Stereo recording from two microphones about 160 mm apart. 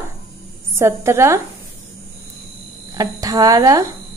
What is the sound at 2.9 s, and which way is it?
Speech, 25° right (ahead or behind).